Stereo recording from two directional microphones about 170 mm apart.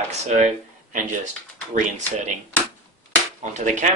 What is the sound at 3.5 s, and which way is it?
Speech, 45° right (ahead or behind).